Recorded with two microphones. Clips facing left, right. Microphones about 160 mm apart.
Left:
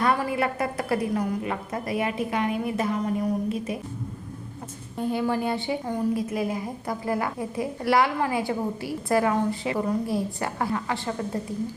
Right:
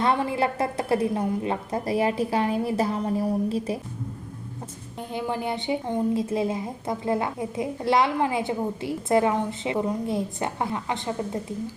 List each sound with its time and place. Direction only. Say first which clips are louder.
0.0 s a woman's voice: right 1 dB; 25° right (ahead or behind)
4.9 s a woman's voice: left 4 dB; 20° right (ahead or behind)